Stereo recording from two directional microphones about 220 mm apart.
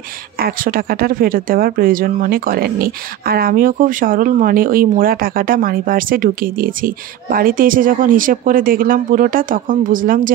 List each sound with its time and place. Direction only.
0.4 s speech: 40° right (ahead or behind)